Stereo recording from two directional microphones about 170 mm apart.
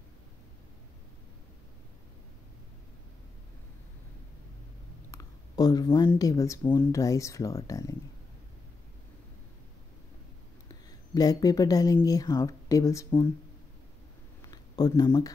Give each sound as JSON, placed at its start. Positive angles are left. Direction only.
{"t": 5.1, "sound": "speech", "side_deg": 20}
{"t": 11.1, "sound": "speech", "side_deg": 20}
{"t": 14.4, "sound": "a sound", "side_deg": 25}